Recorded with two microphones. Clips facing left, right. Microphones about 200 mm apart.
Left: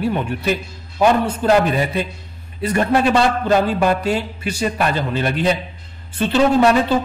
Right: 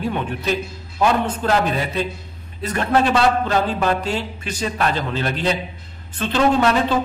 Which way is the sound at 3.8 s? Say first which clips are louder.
Left 3 dB; 10° left (ahead or behind).